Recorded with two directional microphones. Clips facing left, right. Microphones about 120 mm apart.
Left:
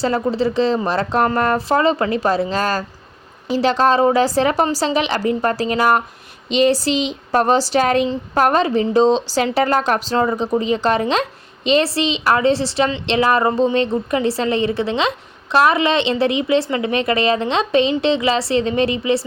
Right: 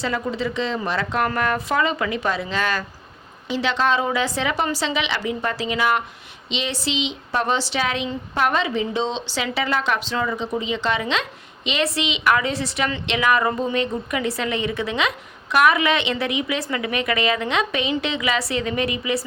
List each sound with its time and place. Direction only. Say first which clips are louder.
0.0 s a woman's voice: left 6 dB; 35° left (ahead or behind)